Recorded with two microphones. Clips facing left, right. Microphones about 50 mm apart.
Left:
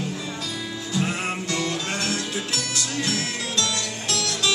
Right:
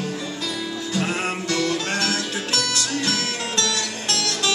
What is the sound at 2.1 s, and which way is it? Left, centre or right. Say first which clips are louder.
Music: right 2 dB; right.